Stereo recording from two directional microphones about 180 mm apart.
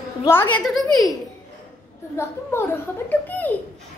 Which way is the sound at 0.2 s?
10° left (ahead or behind).